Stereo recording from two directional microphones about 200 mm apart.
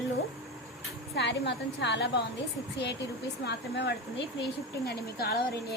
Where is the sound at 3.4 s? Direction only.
55° left (ahead or behind).